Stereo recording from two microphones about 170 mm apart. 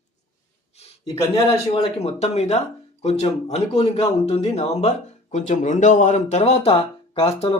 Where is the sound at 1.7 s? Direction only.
40° left (ahead or behind).